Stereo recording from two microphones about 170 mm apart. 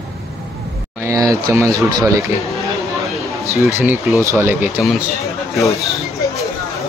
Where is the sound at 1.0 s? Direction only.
20° right (ahead or behind).